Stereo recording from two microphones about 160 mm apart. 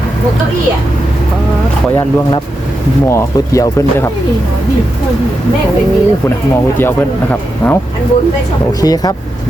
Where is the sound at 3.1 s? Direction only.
20° left (ahead or behind).